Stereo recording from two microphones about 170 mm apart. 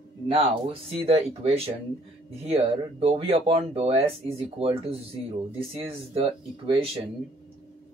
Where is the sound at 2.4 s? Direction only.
35° right (ahead or behind).